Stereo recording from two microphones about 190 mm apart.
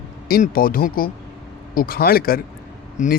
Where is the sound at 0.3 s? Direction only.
50° left (ahead or behind).